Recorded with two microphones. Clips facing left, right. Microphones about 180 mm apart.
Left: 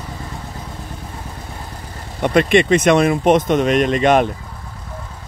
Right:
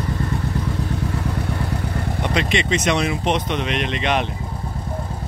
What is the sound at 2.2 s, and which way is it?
Speech, 50° left (ahead or behind).